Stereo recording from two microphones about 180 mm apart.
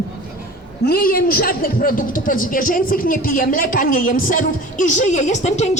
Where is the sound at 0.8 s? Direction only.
55° left (ahead or behind).